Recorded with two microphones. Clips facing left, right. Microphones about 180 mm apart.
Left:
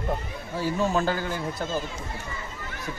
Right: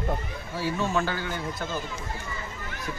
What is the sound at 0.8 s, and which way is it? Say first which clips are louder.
A man's voice: left 4 dB; 30° left (ahead or behind).